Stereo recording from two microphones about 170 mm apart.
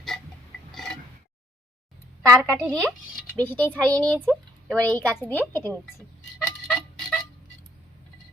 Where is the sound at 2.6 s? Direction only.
5° left (ahead or behind).